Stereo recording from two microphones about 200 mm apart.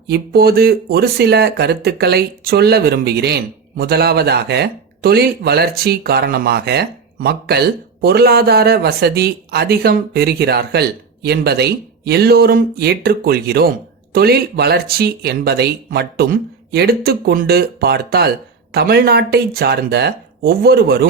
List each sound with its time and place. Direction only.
0.1 s speech: 50° right (ahead or behind)